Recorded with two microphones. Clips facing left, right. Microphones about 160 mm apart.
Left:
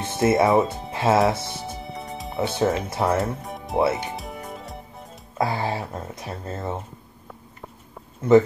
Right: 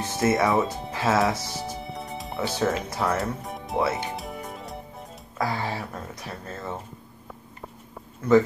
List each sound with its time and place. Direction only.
0.0 s speech: 25° left (ahead or behind)
1.6 s music: centre (ahead or behind)
2.3 s speech: 25° left (ahead or behind)
3.2 s speech: centre (ahead or behind)
3.9 s music: centre (ahead or behind)
5.4 s speech: 25° left (ahead or behind)
8.2 s speech: 25° left (ahead or behind)